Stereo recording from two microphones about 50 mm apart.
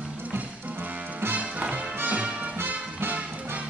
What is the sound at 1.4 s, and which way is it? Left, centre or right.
Music, right.